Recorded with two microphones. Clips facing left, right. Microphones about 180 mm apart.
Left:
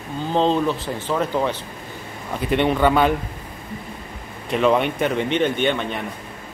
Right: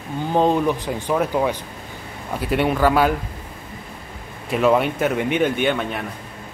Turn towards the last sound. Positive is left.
turn(degrees=-5)  # may be behind; listen again after turning